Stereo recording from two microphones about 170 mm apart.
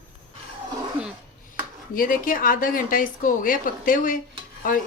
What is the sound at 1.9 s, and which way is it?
A woman's voice, 55° left (ahead or behind).